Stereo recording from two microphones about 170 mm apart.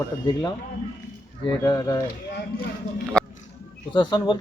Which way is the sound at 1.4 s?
20° left (ahead or behind).